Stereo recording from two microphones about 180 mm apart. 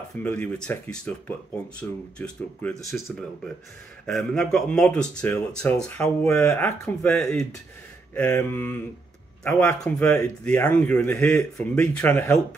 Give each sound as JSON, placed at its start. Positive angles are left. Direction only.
{"t": 0.2, "sound": "speech", "side_deg": 5}